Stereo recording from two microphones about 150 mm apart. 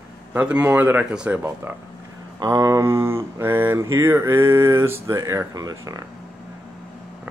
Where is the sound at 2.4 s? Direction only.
20° right (ahead or behind).